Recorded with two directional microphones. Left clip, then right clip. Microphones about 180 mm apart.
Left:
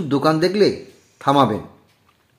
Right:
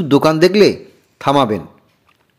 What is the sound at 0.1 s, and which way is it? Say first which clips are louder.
A man's voice: right 6 dB; 30° right (ahead or behind).